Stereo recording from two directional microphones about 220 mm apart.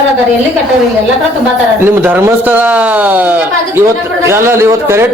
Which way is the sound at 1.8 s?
10° right (ahead or behind).